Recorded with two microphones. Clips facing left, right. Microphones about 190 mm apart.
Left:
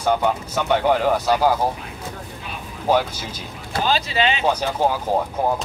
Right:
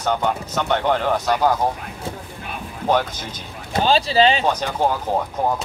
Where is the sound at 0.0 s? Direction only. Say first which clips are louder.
Left 2 dB; 10° left (ahead or behind).